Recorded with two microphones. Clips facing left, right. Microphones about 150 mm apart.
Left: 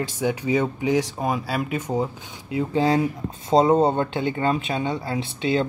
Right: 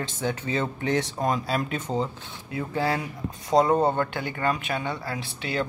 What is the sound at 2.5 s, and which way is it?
Speech, 20° left (ahead or behind).